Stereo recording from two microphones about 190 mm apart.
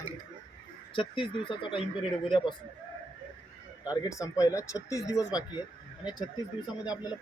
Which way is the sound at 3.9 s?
20° left (ahead or behind).